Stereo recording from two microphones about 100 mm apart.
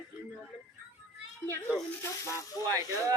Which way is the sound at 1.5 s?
25° left (ahead or behind).